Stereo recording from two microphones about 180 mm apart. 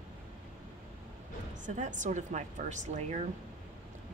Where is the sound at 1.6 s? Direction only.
45° right (ahead or behind).